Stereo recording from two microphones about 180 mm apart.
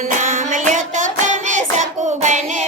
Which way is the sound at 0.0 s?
45° right (ahead or behind).